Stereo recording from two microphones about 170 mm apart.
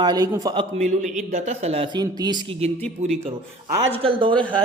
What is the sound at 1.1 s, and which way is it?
A man's voice, 45° right (ahead or behind).